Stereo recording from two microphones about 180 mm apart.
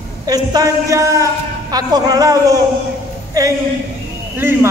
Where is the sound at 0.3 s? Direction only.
20° right (ahead or behind).